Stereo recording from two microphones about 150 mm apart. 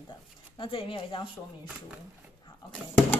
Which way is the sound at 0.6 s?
35° left (ahead or behind).